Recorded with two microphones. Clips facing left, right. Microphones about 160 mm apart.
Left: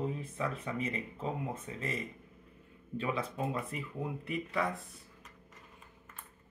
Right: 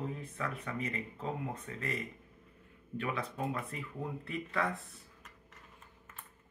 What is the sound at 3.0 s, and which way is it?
Speech, 20° left (ahead or behind).